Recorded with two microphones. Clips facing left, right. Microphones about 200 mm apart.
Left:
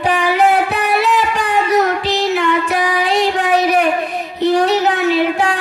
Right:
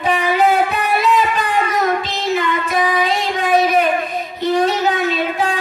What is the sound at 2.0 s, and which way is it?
Child singing, 70° left (ahead or behind).